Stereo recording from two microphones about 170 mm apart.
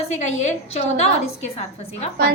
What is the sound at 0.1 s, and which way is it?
A woman's voice, 45° left (ahead or behind).